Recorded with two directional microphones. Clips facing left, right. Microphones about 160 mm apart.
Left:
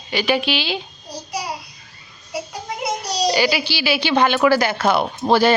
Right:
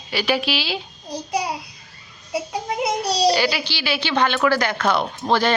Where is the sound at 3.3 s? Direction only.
5° left (ahead or behind).